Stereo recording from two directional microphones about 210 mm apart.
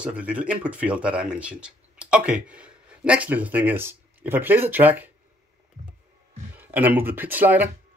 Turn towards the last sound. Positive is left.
turn(degrees=-10)  # may be behind; listen again after turning